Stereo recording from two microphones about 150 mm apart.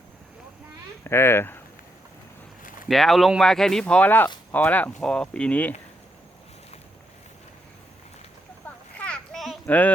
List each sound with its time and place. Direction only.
1.0 s speech: 15° left (ahead or behind)
2.9 s speech: centre (ahead or behind)
8.6 s a sound: 10° left (ahead or behind)